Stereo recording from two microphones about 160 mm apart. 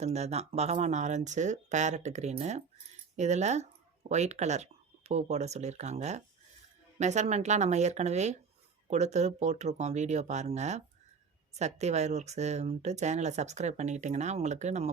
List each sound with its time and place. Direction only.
0.0 s speech: 45° right (ahead or behind)